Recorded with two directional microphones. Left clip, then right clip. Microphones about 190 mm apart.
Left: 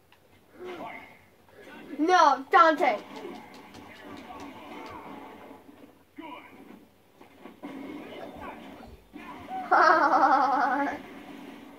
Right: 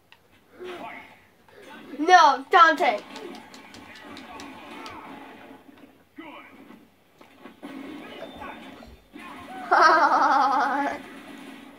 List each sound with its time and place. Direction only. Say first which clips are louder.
2.0 s a woman's voice: right 5 dB; 35° right (ahead or behind)
9.7 s laughter: right 3 dB; 40° right (ahead or behind)